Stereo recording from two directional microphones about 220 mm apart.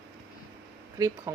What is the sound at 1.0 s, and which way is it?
Speech, 15° right (ahead or behind).